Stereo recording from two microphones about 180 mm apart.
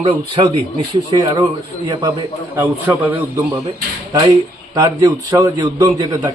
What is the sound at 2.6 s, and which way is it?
Speech, 10° right (ahead or behind).